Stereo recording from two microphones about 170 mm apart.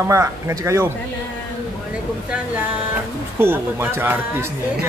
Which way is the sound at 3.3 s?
10° right (ahead or behind).